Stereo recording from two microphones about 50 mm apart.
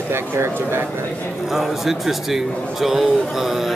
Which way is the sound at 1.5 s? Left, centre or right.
Centre.